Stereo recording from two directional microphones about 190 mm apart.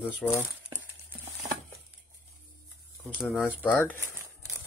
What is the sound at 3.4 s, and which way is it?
Speech, 10° left (ahead or behind).